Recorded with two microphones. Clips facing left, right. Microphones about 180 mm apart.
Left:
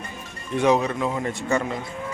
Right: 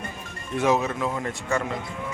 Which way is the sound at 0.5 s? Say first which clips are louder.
Left 3 dB; 5° right (ahead or behind).